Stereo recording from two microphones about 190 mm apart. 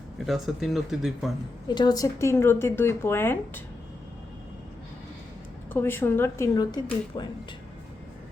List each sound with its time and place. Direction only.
0.3 s speech: centre (ahead or behind)
1.6 s speech: 20° left (ahead or behind)
5.7 s speech: 10° left (ahead or behind)